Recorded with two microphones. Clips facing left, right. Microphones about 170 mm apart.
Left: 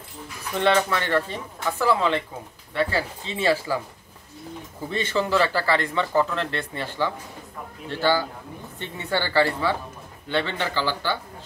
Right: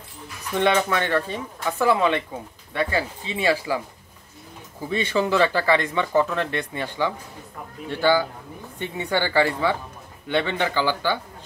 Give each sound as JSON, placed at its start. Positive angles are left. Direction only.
{"t": 0.6, "sound": "speech", "side_deg": -20}
{"t": 4.9, "sound": "speech", "side_deg": -15}